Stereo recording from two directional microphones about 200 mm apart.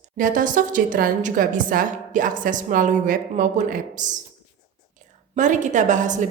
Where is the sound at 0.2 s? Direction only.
45° right (ahead or behind).